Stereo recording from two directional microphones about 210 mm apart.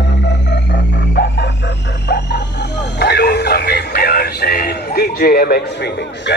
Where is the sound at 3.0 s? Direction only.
50° left (ahead or behind).